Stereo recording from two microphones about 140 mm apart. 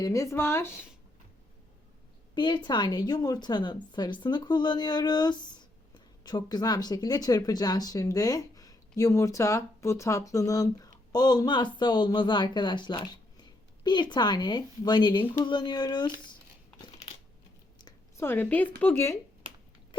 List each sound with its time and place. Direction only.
0.0 s speech: 20° left (ahead or behind)
2.3 s a woman's voice: 35° left (ahead or behind)
18.2 s a woman's voice: 15° left (ahead or behind)